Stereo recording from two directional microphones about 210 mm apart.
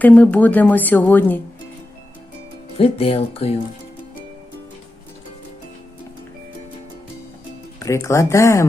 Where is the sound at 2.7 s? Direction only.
25° left (ahead or behind).